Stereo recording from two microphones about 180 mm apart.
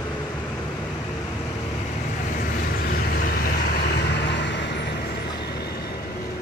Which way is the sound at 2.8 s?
55° left (ahead or behind).